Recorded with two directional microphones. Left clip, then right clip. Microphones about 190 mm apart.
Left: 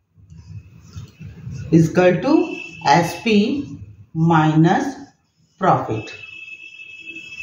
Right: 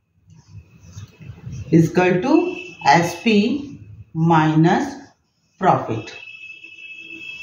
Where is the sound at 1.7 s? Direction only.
15° left (ahead or behind).